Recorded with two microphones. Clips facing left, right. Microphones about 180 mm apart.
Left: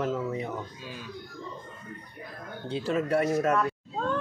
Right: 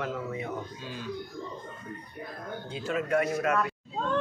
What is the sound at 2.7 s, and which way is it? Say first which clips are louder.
Speech: left 2 dB; 35° left (ahead or behind).